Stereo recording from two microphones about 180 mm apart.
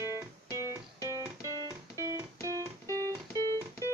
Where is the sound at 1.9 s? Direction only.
15° right (ahead or behind).